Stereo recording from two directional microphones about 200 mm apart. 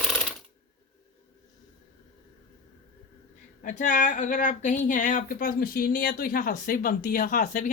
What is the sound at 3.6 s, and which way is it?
Speech, 40° left (ahead or behind).